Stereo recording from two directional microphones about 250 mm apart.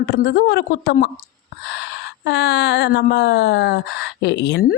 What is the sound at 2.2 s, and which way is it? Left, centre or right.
A woman's voice, left.